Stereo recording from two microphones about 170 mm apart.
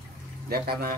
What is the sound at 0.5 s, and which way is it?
Speech, 65° right (ahead or behind).